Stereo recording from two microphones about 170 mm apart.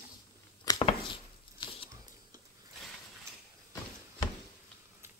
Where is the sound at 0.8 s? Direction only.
30° left (ahead or behind).